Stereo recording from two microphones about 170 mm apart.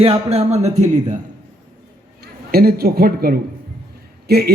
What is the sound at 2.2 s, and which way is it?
A man's voice, 65° right (ahead or behind).